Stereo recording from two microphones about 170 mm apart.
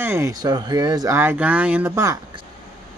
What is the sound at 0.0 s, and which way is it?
Speech, 15° right (ahead or behind).